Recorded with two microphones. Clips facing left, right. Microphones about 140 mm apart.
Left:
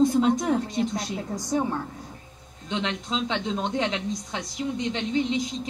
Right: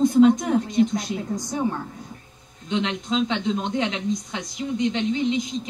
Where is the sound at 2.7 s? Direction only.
35° left (ahead or behind).